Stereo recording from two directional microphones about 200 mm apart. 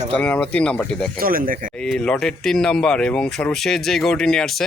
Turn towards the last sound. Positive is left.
turn(degrees=5)  # may be behind; listen again after turning